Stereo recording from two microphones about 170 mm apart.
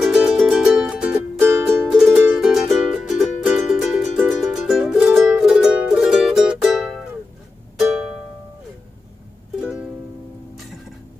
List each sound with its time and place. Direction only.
0.0 s music: centre (ahead or behind)
9.6 s music: 5° right (ahead or behind)